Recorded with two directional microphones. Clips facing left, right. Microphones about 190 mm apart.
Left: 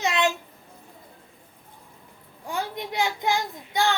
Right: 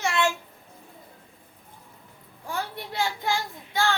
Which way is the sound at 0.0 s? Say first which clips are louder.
Left 1 dB; 20° left (ahead or behind).